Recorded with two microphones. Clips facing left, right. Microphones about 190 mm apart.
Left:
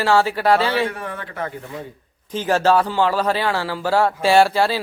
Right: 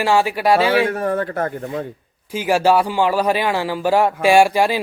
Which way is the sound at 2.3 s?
10° right (ahead or behind).